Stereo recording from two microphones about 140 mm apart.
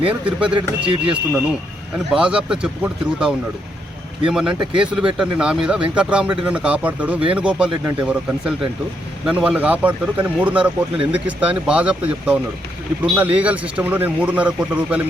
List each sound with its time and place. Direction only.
0.1 s speech: 10° right (ahead or behind)
0.5 s speech: 40° right (ahead or behind)
1.1 s speech: 10° right (ahead or behind)